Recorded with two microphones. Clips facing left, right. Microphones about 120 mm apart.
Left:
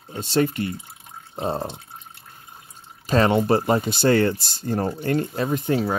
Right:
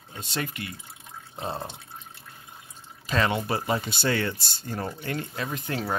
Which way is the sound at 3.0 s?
40° left (ahead or behind).